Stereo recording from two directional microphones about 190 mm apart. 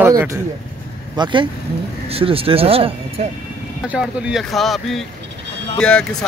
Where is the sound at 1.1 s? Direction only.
25° right (ahead or behind).